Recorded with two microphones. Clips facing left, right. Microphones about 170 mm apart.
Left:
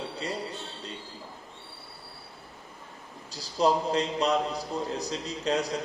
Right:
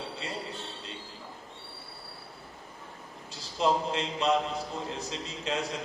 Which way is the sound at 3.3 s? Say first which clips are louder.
Left 3 dB; 40° left (ahead or behind).